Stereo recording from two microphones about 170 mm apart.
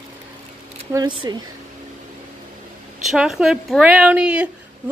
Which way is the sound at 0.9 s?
25° right (ahead or behind).